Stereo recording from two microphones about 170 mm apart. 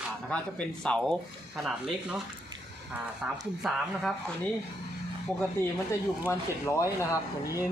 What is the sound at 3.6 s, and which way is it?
Speech, centre (ahead or behind).